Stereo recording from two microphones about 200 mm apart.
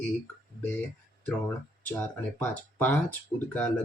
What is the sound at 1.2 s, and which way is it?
Speech, 10° left (ahead or behind).